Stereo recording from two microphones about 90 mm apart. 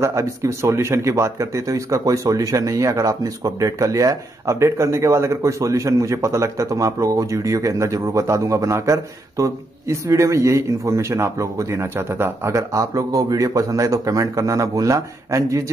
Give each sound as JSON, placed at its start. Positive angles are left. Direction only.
{"t": 0.0, "sound": "speech", "side_deg": -35}